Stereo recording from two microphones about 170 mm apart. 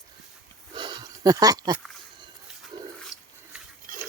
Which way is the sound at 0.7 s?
25° right (ahead or behind).